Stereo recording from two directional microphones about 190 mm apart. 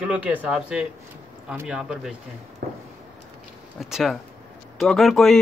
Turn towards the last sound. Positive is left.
turn(degrees=0)  # may be behind; listen again after turning